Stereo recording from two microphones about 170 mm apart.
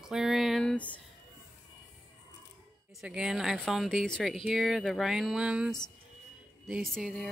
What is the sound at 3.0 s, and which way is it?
Speech, 5° right (ahead or behind).